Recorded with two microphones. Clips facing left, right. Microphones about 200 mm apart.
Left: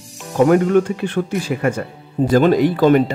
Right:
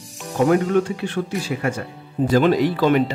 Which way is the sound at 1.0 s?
50° left (ahead or behind).